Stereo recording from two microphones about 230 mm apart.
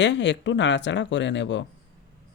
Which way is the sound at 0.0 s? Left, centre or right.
Left.